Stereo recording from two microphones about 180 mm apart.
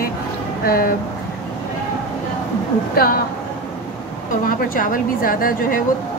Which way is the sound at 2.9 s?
55° left (ahead or behind).